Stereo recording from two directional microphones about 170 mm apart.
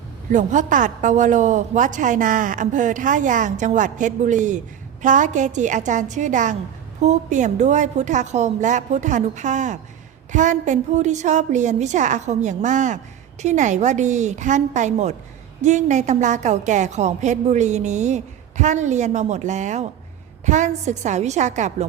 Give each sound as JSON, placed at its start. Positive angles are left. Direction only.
{"t": 0.3, "sound": "a woman's voice", "side_deg": -50}